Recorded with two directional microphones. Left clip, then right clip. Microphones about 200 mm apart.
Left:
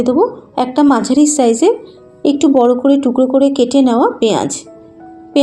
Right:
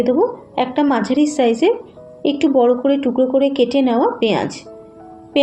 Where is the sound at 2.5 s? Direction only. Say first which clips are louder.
Left 3 dB; 35° left (ahead or behind).